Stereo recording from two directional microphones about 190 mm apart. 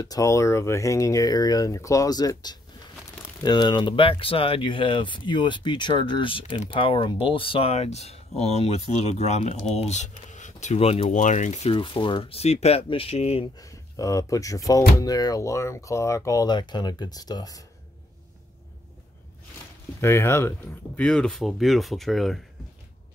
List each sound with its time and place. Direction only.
0.0 s speech: 20° left (ahead or behind)
13.6 s speech: 20° left (ahead or behind)
20.0 s speech: 15° left (ahead or behind)